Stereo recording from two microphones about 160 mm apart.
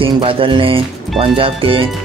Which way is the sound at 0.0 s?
35° right (ahead or behind).